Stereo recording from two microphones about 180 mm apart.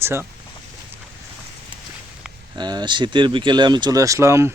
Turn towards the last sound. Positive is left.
turn(degrees=-15)  # may be behind; listen again after turning